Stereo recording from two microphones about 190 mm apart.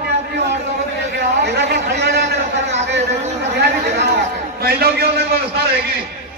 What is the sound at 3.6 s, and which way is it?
A man's voice, 65° right (ahead or behind).